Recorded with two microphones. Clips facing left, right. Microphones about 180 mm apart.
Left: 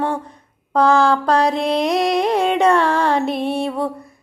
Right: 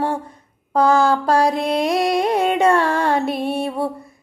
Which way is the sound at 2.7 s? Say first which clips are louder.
Left 1 dB; 50° right (ahead or behind).